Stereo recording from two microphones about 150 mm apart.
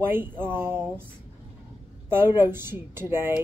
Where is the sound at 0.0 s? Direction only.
15° right (ahead or behind).